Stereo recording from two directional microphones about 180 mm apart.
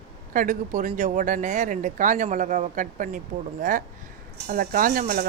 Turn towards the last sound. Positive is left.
turn(degrees=-50)  # may be behind; listen again after turning